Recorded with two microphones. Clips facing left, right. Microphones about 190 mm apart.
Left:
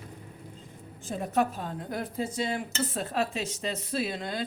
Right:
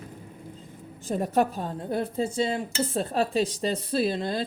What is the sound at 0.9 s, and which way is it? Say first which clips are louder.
Speech: right 4 dB; 40° right (ahead or behind).